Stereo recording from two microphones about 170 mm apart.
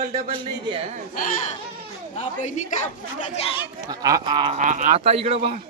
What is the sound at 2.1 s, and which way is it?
Speech, 45° left (ahead or behind).